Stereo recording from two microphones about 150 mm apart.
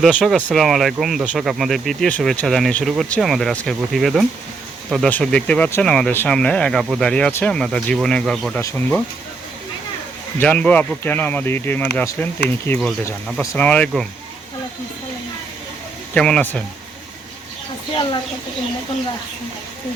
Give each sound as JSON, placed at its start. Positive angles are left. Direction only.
{"t": 0.0, "sound": "speech", "side_deg": -5}
{"t": 10.4, "sound": "speech", "side_deg": 10}
{"t": 16.1, "sound": "speech", "side_deg": 5}